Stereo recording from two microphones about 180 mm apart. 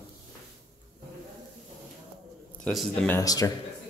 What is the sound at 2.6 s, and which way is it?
Speech, 5° left (ahead or behind).